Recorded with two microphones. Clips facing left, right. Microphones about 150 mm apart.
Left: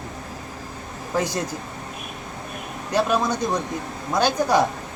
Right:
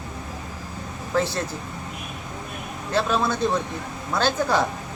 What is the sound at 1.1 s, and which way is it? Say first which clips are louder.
Speech: even; 15° left (ahead or behind).